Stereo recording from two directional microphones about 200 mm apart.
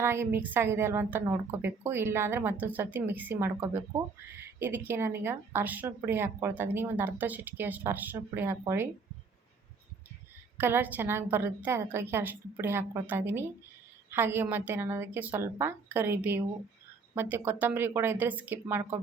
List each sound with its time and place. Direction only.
0.0 s a woman's voice: 10° right (ahead or behind)
10.6 s a woman's voice: 10° right (ahead or behind)